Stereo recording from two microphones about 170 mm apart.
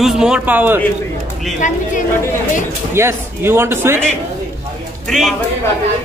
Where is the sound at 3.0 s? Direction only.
15° right (ahead or behind).